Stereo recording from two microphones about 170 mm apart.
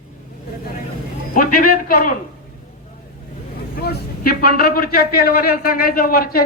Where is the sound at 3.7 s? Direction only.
65° left (ahead or behind).